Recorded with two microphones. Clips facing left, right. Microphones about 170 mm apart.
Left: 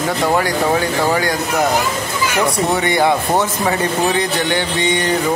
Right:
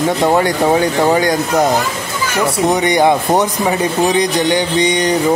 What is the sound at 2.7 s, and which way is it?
Speech, 20° right (ahead or behind).